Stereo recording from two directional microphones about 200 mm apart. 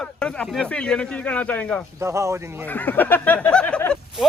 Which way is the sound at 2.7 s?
10° left (ahead or behind).